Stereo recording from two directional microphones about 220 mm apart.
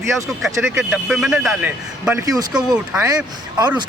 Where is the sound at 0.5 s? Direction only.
10° right (ahead or behind).